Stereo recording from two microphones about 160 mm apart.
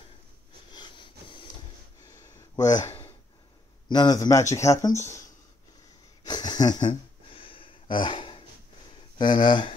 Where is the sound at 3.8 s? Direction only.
25° left (ahead or behind).